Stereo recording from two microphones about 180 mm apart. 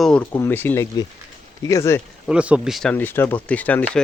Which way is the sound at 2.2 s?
5° right (ahead or behind).